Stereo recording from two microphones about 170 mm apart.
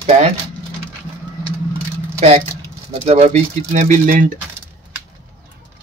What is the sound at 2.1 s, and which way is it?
Speech, 40° right (ahead or behind).